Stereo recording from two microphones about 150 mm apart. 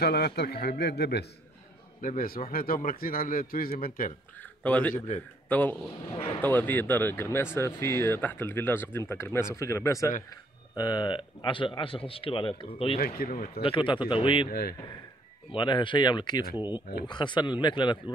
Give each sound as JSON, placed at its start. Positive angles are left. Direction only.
{"t": 0.0, "sound": "a man's voice", "side_deg": 90}
{"t": 2.0, "sound": "a man's voice", "side_deg": 65}
{"t": 4.4, "sound": "a man's voice", "side_deg": 10}
{"t": 4.9, "sound": "a man's voice", "side_deg": 50}
{"t": 5.5, "sound": "speech", "side_deg": 10}
{"t": 13.0, "sound": "a man's voice", "side_deg": 75}
{"t": 13.6, "sound": "speech", "side_deg": 35}
{"t": 14.5, "sound": "a man's voice", "side_deg": 90}
{"t": 15.5, "sound": "speech", "side_deg": 30}